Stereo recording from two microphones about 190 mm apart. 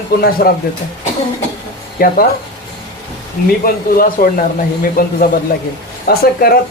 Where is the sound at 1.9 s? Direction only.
50° left (ahead or behind).